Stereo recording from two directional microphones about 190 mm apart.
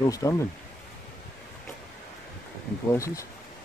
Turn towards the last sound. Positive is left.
turn(degrees=15)  # may be behind; listen again after turning